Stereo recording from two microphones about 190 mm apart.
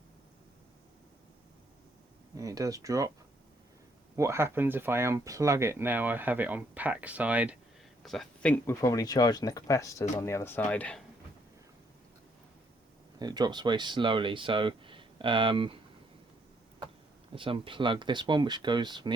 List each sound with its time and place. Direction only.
2.3 s speech: 20° right (ahead or behind)
4.1 s speech: 15° right (ahead or behind); by 11.0 s 5° left (ahead or behind)
13.1 s speech: 20° right (ahead or behind)
17.3 s speech: 25° right (ahead or behind)